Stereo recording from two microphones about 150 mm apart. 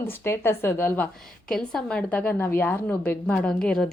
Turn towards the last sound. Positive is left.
turn(degrees=5)  # may be behind; listen again after turning